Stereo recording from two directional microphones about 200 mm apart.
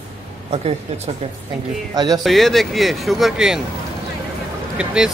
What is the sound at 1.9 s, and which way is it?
Speech, 20° right (ahead or behind).